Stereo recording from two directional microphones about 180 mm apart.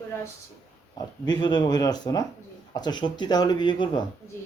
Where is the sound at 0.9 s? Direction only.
25° left (ahead or behind).